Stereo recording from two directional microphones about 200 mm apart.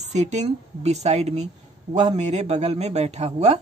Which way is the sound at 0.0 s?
35° right (ahead or behind).